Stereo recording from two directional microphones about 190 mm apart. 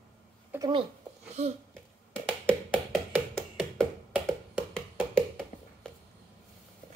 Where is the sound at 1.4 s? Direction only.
35° right (ahead or behind).